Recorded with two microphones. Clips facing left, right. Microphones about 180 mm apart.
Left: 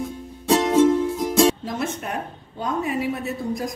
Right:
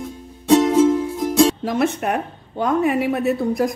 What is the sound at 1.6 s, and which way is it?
A woman's voice, 70° right (ahead or behind).